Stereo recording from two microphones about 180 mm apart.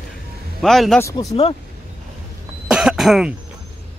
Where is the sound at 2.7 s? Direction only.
5° right (ahead or behind).